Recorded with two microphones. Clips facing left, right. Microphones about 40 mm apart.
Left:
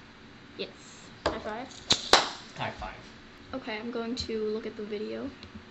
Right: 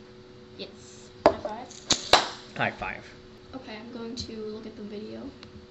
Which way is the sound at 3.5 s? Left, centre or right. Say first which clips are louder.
Left 5 dB; left.